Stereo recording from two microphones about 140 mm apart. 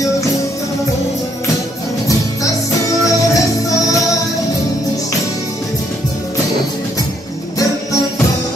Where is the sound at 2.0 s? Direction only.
25° left (ahead or behind).